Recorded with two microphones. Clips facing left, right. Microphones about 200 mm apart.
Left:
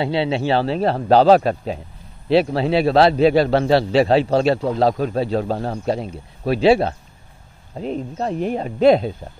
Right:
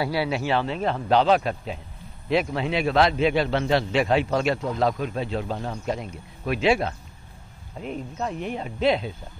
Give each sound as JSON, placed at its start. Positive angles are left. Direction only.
{"t": 0.0, "sound": "a man's voice", "side_deg": 25}